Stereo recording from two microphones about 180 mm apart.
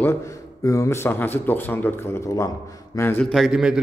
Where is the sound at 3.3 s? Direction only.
Centre (ahead or behind).